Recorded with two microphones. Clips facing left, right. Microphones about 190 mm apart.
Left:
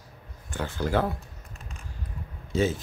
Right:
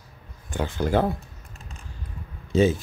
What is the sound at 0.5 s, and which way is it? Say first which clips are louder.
Speech: right 4 dB; 15° right (ahead or behind).